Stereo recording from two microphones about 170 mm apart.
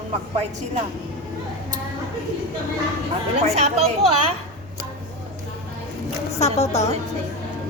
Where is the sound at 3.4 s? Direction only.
40° right (ahead or behind).